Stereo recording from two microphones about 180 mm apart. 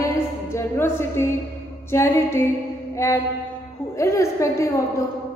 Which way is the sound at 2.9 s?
15° left (ahead or behind).